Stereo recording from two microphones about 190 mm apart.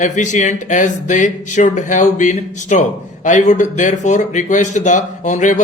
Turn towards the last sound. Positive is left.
turn(degrees=40)  # may be behind; listen again after turning